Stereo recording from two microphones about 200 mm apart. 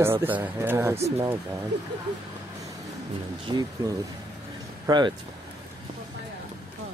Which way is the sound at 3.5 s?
20° right (ahead or behind).